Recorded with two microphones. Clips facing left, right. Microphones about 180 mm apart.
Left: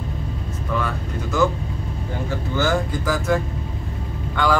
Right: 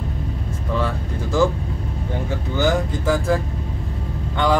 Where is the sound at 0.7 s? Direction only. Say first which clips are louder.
Right 2 dB; 30° right (ahead or behind).